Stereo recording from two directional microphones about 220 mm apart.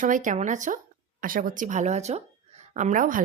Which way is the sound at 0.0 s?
35° right (ahead or behind).